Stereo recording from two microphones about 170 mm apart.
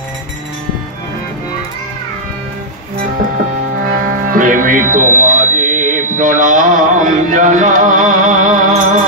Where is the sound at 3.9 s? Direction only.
50° right (ahead or behind).